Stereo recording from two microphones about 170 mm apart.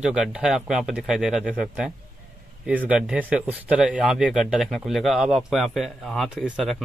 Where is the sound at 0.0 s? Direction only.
5° right (ahead or behind).